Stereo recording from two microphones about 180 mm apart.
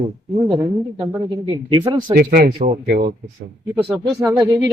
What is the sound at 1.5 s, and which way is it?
Speech, 25° right (ahead or behind).